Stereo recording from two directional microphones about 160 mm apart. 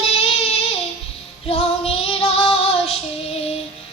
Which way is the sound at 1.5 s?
40° left (ahead or behind).